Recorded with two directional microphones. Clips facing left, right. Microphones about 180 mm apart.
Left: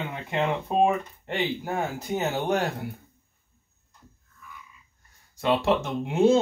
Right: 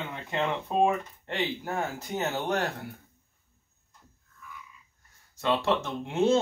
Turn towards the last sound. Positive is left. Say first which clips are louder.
# left 4 dB
turn(degrees=10)  # may be behind; listen again after turning